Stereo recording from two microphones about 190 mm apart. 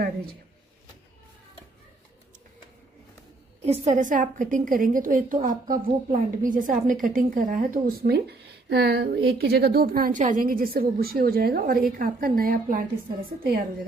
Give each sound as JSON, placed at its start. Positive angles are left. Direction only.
{"t": 3.6, "sound": "a woman's voice", "side_deg": -35}